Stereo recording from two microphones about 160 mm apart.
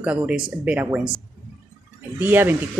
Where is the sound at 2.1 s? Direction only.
15° right (ahead or behind).